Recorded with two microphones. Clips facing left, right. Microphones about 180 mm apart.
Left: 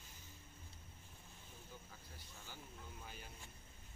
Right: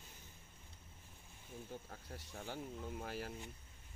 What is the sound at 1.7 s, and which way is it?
Speech, 65° right (ahead or behind).